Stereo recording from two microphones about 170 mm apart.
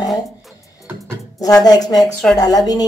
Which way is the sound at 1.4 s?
20° left (ahead or behind).